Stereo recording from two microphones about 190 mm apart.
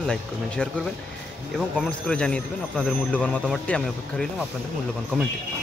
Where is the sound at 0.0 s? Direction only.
5° left (ahead or behind).